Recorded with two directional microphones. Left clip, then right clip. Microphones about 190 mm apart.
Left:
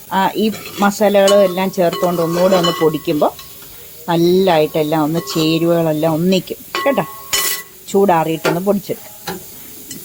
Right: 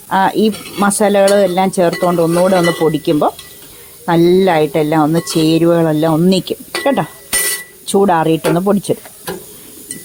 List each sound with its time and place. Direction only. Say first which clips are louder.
0.1 s speech: right 3 dB; 45° right (ahead or behind)